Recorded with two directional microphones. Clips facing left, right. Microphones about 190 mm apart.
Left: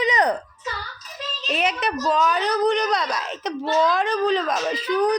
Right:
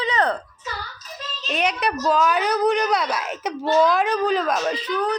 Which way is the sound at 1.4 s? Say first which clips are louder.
Right 1 dB; centre (ahead or behind).